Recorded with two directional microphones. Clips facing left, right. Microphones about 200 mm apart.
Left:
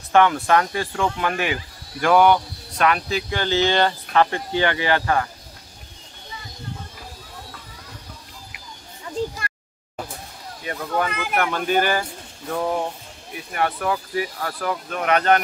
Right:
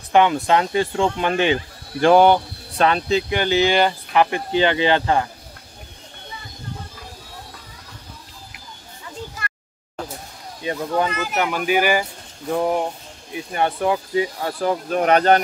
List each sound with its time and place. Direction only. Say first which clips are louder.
0.1 s speech: right 1 dB; 20° right (ahead or behind)
10.6 s speech: right 3 dB; 25° right (ahead or behind)
11.3 s speech: even; 10° right (ahead or behind)
13.5 s speech: right 3 dB; 25° right (ahead or behind)